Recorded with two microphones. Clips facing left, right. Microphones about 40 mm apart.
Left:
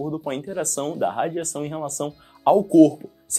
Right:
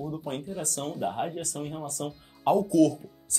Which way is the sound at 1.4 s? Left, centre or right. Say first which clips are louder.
Left 7 dB; left.